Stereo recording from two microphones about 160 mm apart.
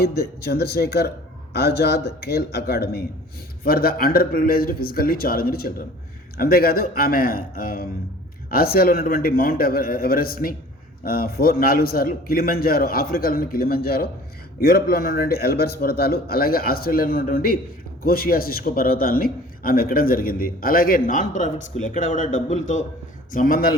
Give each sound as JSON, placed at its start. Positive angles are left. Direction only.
{"t": 0.0, "sound": "speech", "side_deg": 80}
{"t": 3.6, "sound": "a man's voice", "side_deg": 70}
{"t": 23.3, "sound": "a man's voice", "side_deg": 60}